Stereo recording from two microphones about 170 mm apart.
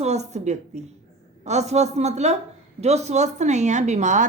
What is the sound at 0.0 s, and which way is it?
A woman's voice, 40° right (ahead or behind).